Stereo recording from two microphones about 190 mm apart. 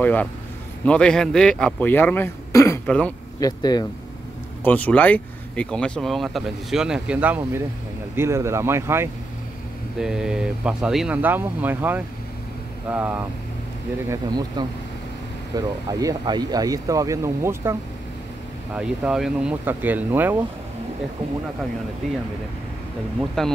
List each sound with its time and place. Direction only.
0.0 s a man's voice: 10° left (ahead or behind)
3.3 s speech: 20° left (ahead or behind)
4.6 s speech: 10° left (ahead or behind); by 9.1 s 15° right (ahead or behind)
9.9 s speech: centre (ahead or behind)
18.8 s speech: 5° right (ahead or behind)
23.4 s speech: 5° left (ahead or behind)